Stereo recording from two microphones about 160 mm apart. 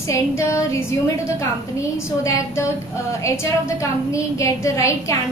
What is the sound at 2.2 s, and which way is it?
A woman's voice, 20° left (ahead or behind).